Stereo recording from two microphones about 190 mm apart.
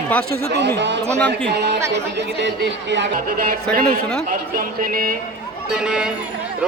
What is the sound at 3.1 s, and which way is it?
Music, 50° right (ahead or behind).